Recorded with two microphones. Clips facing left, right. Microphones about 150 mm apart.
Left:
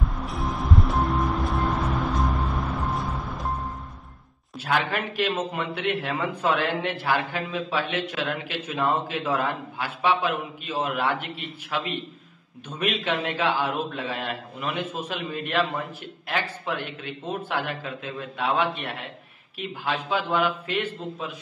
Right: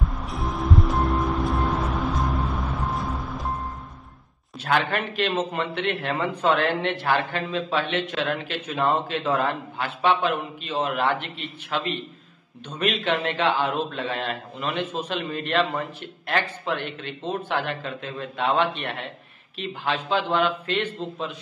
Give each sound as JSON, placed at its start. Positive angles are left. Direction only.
{"t": 0.0, "sound": "music", "side_deg": 0}
{"t": 4.6, "sound": "a man's voice", "side_deg": 5}
{"t": 16.3, "sound": "a man's voice", "side_deg": 5}